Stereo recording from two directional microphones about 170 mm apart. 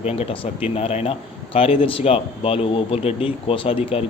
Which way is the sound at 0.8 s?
40° left (ahead or behind).